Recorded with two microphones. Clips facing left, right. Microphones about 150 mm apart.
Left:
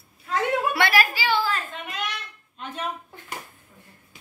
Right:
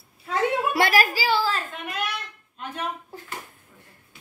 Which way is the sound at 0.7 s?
40° right (ahead or behind).